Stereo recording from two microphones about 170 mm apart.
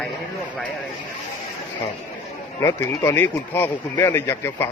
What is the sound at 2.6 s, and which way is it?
Speech, 15° left (ahead or behind).